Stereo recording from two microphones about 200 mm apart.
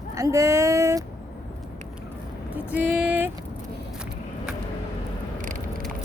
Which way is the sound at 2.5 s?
10° right (ahead or behind).